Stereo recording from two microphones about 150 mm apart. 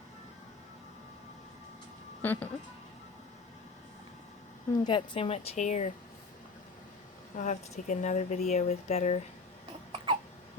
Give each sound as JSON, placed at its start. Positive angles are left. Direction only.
{"t": 2.2, "sound": "speech", "side_deg": 10}
{"t": 4.8, "sound": "a woman's voice", "side_deg": 30}
{"t": 7.3, "sound": "speech", "side_deg": 55}